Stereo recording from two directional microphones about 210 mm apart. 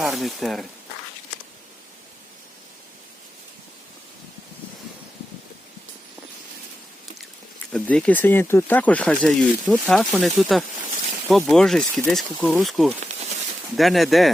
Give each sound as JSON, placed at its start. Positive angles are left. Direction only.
{"t": 0.0, "sound": "speech", "side_deg": 0}
{"t": 7.7, "sound": "speech", "side_deg": 5}
{"t": 13.1, "sound": "a sound", "side_deg": -30}
{"t": 13.7, "sound": "speech", "side_deg": 0}